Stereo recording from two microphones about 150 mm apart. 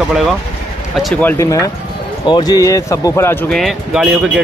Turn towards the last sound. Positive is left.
turn(degrees=-5)  # may be behind; listen again after turning